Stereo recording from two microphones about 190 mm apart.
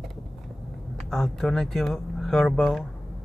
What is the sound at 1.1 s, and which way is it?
Speech, centre (ahead or behind).